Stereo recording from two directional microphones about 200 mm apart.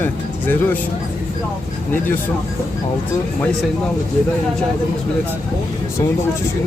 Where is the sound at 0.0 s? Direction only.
10° left (ahead or behind).